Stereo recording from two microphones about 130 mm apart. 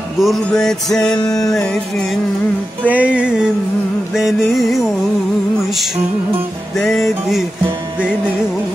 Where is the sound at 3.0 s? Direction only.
10° right (ahead or behind).